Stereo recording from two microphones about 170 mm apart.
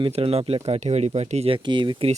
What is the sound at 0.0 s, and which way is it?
Speech, 35° right (ahead or behind).